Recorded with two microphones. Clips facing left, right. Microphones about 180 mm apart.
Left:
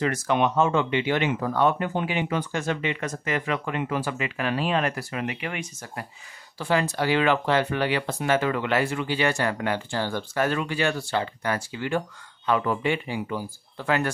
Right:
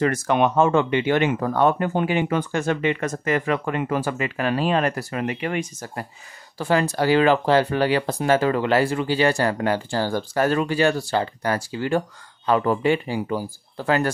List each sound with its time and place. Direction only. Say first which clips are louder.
0.0 s speech: right 4 dB; 50° right (ahead or behind)